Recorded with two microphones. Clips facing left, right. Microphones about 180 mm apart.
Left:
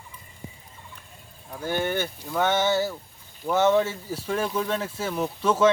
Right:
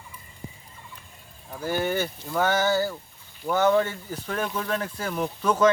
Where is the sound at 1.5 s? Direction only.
5° right (ahead or behind).